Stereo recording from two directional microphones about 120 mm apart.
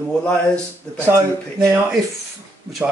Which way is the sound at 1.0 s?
20° right (ahead or behind).